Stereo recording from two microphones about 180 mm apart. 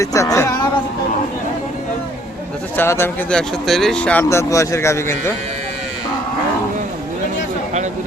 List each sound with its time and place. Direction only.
0.0 s speech: 20° left (ahead or behind)
2.7 s speech: 15° left (ahead or behind)